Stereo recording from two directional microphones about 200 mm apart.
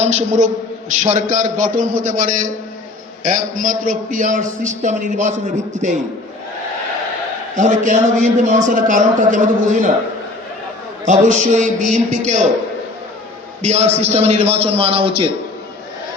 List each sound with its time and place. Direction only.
0.0 s a man's voice: 35° right (ahead or behind)
7.5 s a man's voice: 40° right (ahead or behind)
11.0 s a man's voice: 40° right (ahead or behind)
13.6 s a man's voice: 35° right (ahead or behind)